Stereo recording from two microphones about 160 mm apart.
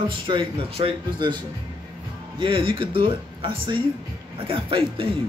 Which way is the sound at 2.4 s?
35° right (ahead or behind).